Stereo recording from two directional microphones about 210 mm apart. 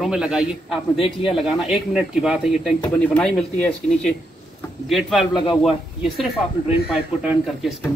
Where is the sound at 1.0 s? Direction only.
25° left (ahead or behind).